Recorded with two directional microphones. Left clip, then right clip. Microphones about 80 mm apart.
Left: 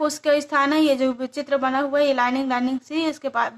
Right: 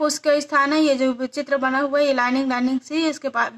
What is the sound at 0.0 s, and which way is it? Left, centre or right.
Speech, centre.